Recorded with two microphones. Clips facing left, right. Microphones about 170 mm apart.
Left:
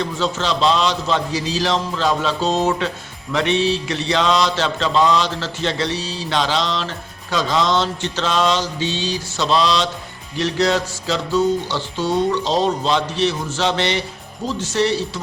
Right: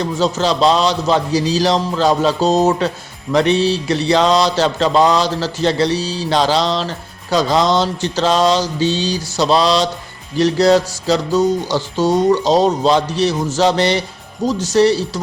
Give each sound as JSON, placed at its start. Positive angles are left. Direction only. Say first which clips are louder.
{"t": 0.0, "sound": "mantra", "louder": "right 5 dB", "side_deg": -40}